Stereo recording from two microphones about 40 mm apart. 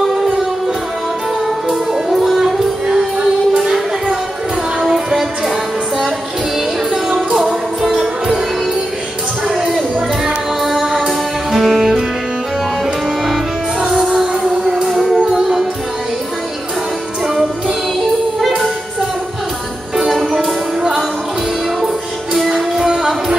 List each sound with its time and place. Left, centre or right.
1.9 s music: centre
4.8 s music: centre
7.8 s music: centre
10.2 s music: centre
13.7 s music: right
14.9 s music: centre
21.8 s music: centre
22.8 s music: right